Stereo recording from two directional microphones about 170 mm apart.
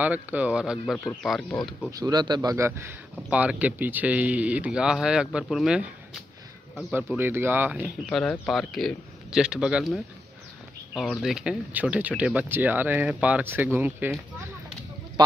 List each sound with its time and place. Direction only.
0.0 s speech: 10° right (ahead or behind)
1.9 s speech: 20° right (ahead or behind); by 5.9 s 5° right (ahead or behind)
7.2 s speech: 10° right (ahead or behind)
8.1 s speech: 5° left (ahead or behind)
15.2 s a sound: 25° right (ahead or behind)